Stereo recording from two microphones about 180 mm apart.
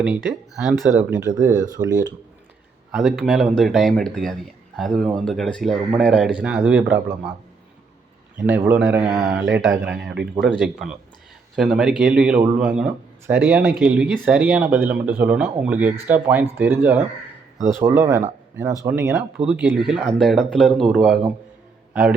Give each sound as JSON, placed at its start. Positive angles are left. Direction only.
{"t": 0.0, "sound": "speech", "side_deg": -5}
{"t": 1.2, "sound": "speech", "side_deg": -15}
{"t": 2.9, "sound": "a man's voice", "side_deg": 0}
{"t": 8.4, "sound": "a man's voice", "side_deg": -10}